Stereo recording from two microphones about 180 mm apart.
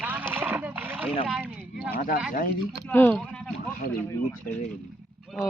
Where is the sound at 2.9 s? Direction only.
10° left (ahead or behind).